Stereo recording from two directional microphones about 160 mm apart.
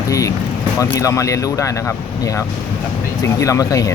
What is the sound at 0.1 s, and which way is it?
Speech, 20° left (ahead or behind).